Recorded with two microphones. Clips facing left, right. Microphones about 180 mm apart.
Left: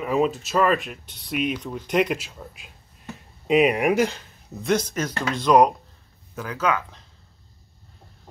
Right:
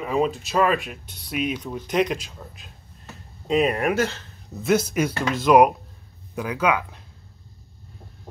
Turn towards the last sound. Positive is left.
turn(degrees=-15)  # may be behind; listen again after turning